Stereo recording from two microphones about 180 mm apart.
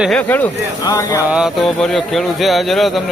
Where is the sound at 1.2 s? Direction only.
5° right (ahead or behind).